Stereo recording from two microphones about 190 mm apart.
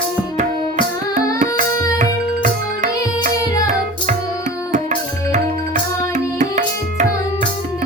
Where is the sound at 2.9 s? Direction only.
20° left (ahead or behind).